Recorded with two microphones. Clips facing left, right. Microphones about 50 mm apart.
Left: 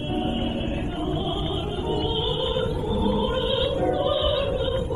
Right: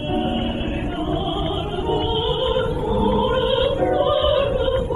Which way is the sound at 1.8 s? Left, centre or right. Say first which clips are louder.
Right 5 dB; right.